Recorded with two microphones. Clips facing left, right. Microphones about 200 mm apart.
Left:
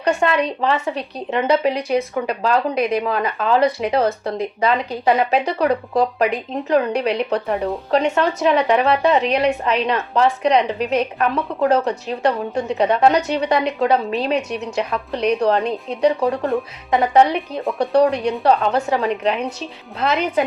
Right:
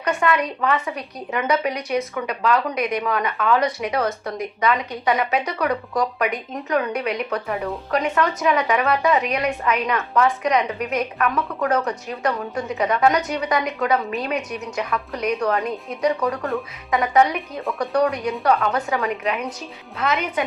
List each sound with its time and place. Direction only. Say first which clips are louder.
0.0 s a woman's voice: left 3 dB; 30° left (ahead or behind)